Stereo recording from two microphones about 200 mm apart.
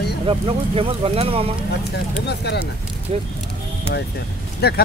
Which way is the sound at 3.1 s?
30° right (ahead or behind).